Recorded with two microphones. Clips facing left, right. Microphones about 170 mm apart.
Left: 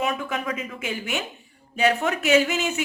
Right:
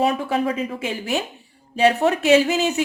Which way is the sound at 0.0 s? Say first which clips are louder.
Right 7 dB; 35° right (ahead or behind).